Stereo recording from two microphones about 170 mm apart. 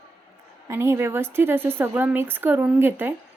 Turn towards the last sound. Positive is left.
turn(degrees=-10)  # may be behind; listen again after turning